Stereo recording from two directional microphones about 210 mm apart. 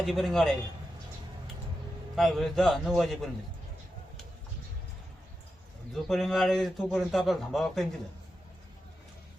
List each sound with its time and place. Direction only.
0.0 s a man's voice: centre (ahead or behind)
2.1 s a man's voice: centre (ahead or behind)
5.9 s a man's voice: centre (ahead or behind)